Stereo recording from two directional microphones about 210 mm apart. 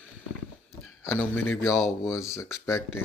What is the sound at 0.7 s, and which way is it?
Speech, 10° left (ahead or behind).